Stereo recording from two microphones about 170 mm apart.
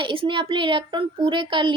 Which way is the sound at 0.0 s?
30° right (ahead or behind).